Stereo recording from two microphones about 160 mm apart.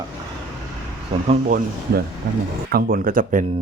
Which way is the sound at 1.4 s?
60° right (ahead or behind).